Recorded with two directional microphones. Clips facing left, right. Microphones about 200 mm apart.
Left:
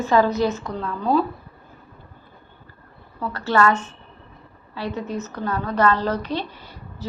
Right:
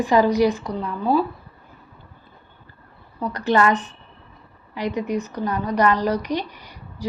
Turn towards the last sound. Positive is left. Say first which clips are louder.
# right 1 dB
turn(degrees=-15)  # may be behind; listen again after turning